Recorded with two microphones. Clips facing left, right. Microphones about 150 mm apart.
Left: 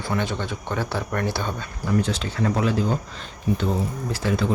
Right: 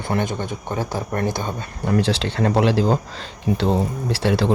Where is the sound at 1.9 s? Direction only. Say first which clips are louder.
Right 4 dB; 85° right.